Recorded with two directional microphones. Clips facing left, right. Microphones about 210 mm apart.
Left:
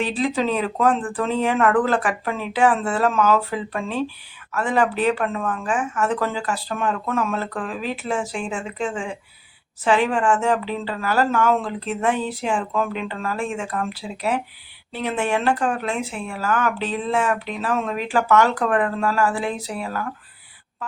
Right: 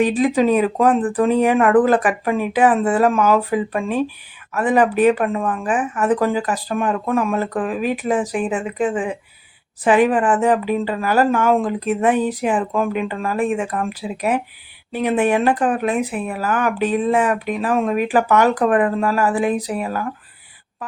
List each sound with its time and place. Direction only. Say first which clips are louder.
0.0 s speech: right 6 dB; 15° right (ahead or behind)